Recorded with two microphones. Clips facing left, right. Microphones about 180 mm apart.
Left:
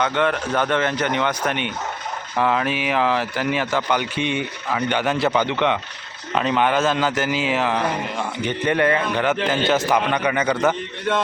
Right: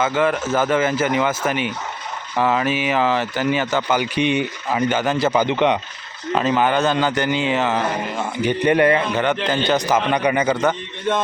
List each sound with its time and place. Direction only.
0.0 s speech: 5° right (ahead or behind)
4.1 s a man's voice: 20° right (ahead or behind)
4.9 s a man's voice: centre (ahead or behind)
6.3 s speech: centre (ahead or behind)
8.4 s a man's voice: 15° right (ahead or behind)
9.1 s speech: centre (ahead or behind)
10.2 s a man's voice: 35° right (ahead or behind)
10.4 s speech: centre (ahead or behind)